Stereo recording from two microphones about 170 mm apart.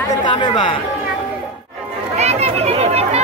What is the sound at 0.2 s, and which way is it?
Speech, 25° left (ahead or behind).